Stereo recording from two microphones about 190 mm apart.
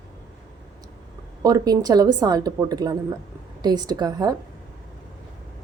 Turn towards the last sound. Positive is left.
turn(degrees=-20)  # may be behind; listen again after turning